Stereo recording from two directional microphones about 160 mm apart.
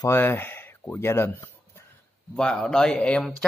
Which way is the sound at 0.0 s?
15° left (ahead or behind).